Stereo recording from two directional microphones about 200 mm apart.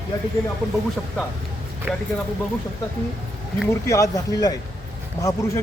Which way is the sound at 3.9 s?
15° left (ahead or behind).